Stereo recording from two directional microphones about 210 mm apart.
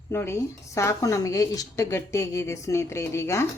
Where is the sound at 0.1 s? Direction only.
10° left (ahead or behind).